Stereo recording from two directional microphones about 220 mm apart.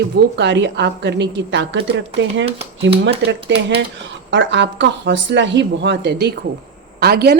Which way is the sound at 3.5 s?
55° right (ahead or behind).